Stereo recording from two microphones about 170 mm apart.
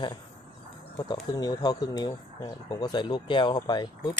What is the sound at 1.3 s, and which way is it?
Speech, 20° left (ahead or behind).